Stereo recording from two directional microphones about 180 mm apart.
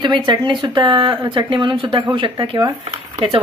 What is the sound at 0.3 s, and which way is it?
Speech, 25° right (ahead or behind).